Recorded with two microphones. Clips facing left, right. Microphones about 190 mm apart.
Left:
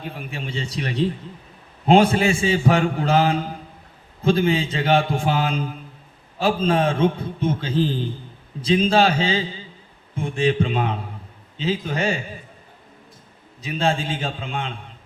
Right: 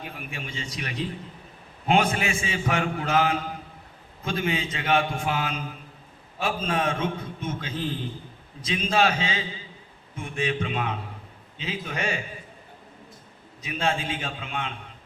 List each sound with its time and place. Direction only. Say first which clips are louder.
0.3 s a man's voice: left 6 dB; 30° left (ahead or behind)
13.6 s a man's voice: left 5 dB; 30° left (ahead or behind)